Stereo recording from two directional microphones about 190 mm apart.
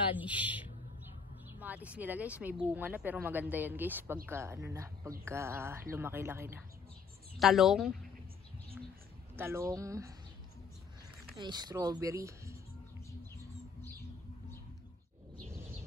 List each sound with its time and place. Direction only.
0.2 s speech: 10° right (ahead or behind)
7.3 s speech: centre (ahead or behind)
9.3 s speech: 15° right (ahead or behind)
11.3 s speech: 20° right (ahead or behind)